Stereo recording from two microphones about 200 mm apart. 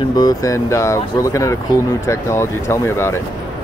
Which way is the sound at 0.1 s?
20° left (ahead or behind).